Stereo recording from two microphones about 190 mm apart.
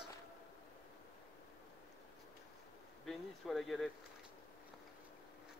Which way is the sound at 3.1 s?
Centre (ahead or behind).